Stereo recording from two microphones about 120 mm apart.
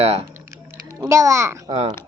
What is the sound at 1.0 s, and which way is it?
Speech, 25° right (ahead or behind).